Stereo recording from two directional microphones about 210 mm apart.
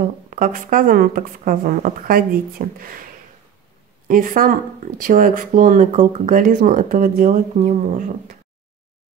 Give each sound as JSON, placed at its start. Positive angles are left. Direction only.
{"t": 0.3, "sound": "speech", "side_deg": -40}
{"t": 4.1, "sound": "speech", "side_deg": -40}